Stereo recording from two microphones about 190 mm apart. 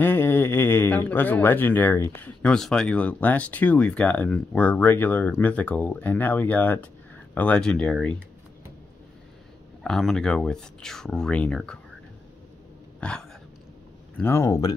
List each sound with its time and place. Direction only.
0.0 s speech: 10° left (ahead or behind)
9.8 s speech: centre (ahead or behind)
13.0 s a sound: 5° left (ahead or behind)
14.1 s speech: 10° left (ahead or behind)